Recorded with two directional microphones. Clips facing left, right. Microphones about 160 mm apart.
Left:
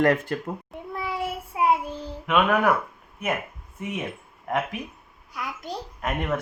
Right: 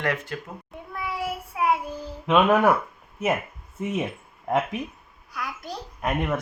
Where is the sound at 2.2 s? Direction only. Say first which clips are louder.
Right 3 dB; 30° right (ahead or behind).